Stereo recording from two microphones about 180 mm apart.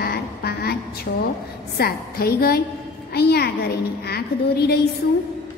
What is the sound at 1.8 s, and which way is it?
A woman's voice, 60° left (ahead or behind).